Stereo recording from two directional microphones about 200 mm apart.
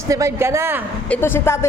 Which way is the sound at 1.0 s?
10° left (ahead or behind).